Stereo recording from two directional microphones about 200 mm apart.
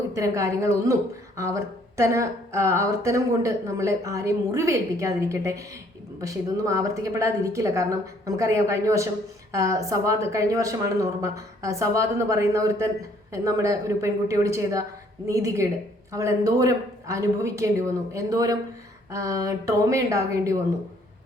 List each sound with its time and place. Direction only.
0.1 s speech: 15° right (ahead or behind)